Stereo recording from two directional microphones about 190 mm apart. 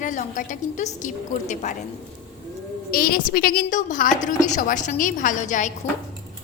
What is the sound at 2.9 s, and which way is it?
A woman's voice, 50° left (ahead or behind).